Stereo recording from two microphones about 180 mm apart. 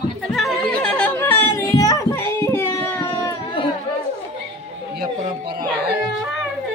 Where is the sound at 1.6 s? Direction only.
20° left (ahead or behind).